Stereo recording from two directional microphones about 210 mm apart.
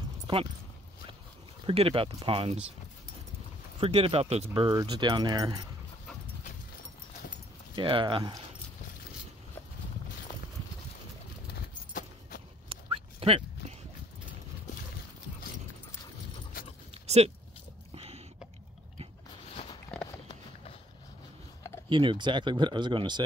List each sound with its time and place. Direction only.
0.3 s speech: 25° right (ahead or behind)
1.7 s speech: 25° right (ahead or behind)
3.8 s speech: 25° right (ahead or behind)
7.7 s speech: 25° right (ahead or behind)
12.6 s dog: 25° right (ahead or behind)
16.9 s a sound: 30° right (ahead or behind)
19.9 s clip-clop: 5° left (ahead or behind)
21.8 s speech: 20° right (ahead or behind)